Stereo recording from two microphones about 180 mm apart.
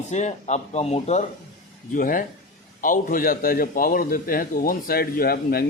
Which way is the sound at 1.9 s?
50° left (ahead or behind).